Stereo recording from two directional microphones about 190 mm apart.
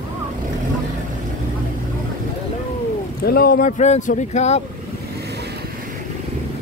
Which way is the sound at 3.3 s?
50° left (ahead or behind).